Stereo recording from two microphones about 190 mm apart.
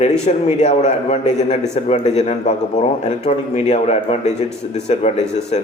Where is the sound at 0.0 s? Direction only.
35° left (ahead or behind).